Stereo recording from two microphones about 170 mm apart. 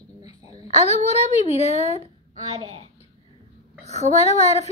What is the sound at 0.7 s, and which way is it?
Speech, 40° left (ahead or behind).